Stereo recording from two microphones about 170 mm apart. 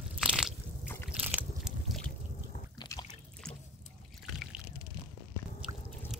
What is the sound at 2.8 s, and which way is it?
Trickle, 25° left (ahead or behind).